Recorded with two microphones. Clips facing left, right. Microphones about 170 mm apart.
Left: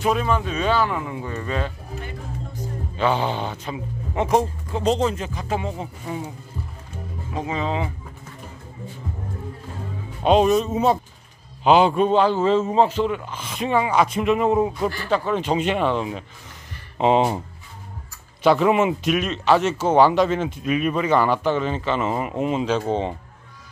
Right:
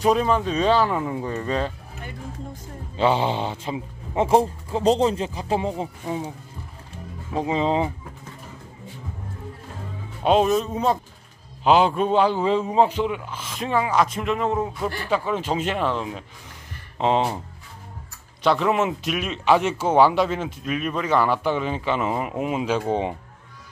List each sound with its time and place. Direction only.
0.0 s a man's voice: 35° right (ahead or behind)
3.0 s a man's voice: 25° right (ahead or behind)
6.0 s speech: 15° right (ahead or behind)
7.3 s a man's voice: 30° right (ahead or behind)
10.2 s speech: centre (ahead or behind)
14.7 s speech: 5° right (ahead or behind)
18.4 s speech: 5° left (ahead or behind); by 23.1 s 10° right (ahead or behind)